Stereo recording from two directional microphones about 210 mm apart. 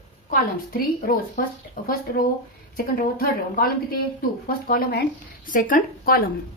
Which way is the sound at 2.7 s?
45° left (ahead or behind).